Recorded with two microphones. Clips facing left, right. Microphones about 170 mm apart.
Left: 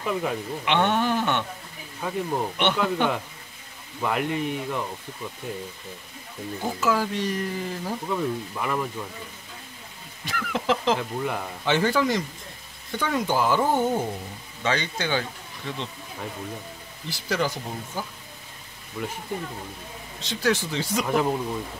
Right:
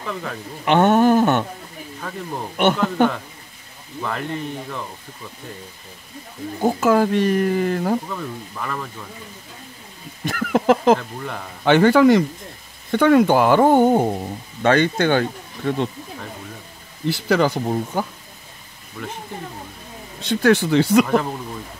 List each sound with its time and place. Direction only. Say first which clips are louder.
0.0 s speech: left 2 dB; 15° left (ahead or behind)
0.7 s a man's voice: right 9 dB; 45° right (ahead or behind)
2.0 s speech: left 3 dB; 10° left (ahead or behind)
3.0 s a man's voice: right 8 dB; 45° right (ahead or behind)
4.0 s speech: left 1 dB; 10° left (ahead or behind)
6.6 s speech: right 8 dB; 50° right (ahead or behind)
8.1 s speech: left 3 dB; 10° left (ahead or behind)
10.2 s chicken: right 9 dB; 50° right (ahead or behind)
11.0 s speech: left 2 dB; 5° left (ahead or behind)
11.6 s speech: right 10 dB; 65° right (ahead or behind)
17.1 s speech: right 8 dB; 60° right (ahead or behind)
19.0 s speech: even; 10° left (ahead or behind)
20.2 s speech: right 8 dB; 55° right (ahead or behind)